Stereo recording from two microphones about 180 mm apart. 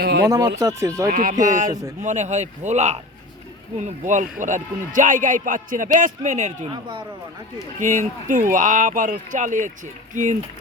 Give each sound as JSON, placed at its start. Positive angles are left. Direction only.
{"t": 0.0, "sound": "speech", "side_deg": -65}
{"t": 0.3, "sound": "speech", "side_deg": -20}
{"t": 1.1, "sound": "speech", "side_deg": -50}
{"t": 6.7, "sound": "speech", "side_deg": -25}
{"t": 7.8, "sound": "speech", "side_deg": -45}